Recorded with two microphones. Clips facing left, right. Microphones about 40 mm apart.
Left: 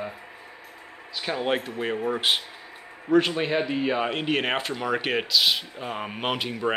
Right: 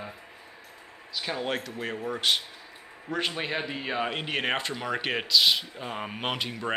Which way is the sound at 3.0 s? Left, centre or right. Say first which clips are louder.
Left 9 dB; centre.